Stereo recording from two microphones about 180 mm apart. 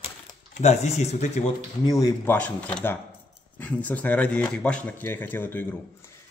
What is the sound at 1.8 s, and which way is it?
Speech, 20° left (ahead or behind).